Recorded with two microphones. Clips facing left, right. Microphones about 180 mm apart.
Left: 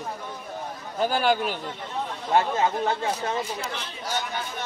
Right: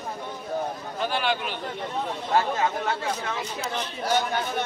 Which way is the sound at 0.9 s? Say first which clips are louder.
Left 5 dB; 40° left (ahead or behind).